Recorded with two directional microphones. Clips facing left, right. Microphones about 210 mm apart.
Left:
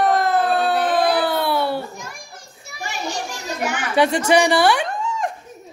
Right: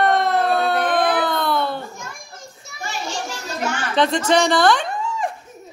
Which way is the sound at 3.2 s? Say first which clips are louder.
Even; 15° left (ahead or behind).